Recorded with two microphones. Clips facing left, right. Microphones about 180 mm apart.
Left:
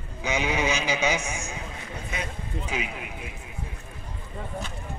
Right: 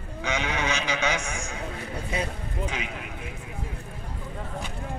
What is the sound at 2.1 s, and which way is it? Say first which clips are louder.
Speech: right 5 dB; 30° right (ahead or behind).